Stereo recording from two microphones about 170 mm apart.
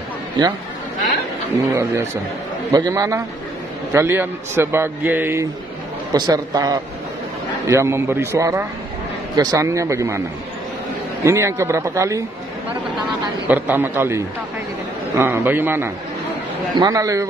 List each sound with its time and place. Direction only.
0.4 s a man's voice: 25° right (ahead or behind)
1.7 s a man's voice: 15° right (ahead or behind)
11.2 s a man's voice: 15° right (ahead or behind)
13.5 s a man's voice: 10° right (ahead or behind)